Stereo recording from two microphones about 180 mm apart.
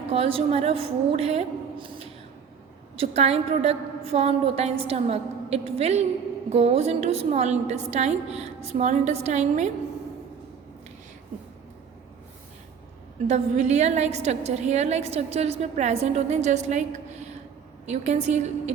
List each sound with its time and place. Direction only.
0.1 s a woman's voice: 30° right (ahead or behind)
13.2 s a woman's voice: 40° right (ahead or behind)